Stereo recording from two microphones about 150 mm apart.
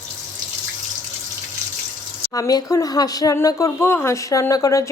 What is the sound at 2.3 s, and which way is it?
Speech, 25° left (ahead or behind).